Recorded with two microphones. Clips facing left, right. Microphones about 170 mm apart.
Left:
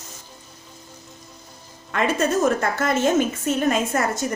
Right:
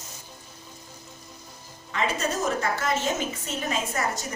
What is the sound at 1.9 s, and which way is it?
A woman's voice, 55° left (ahead or behind).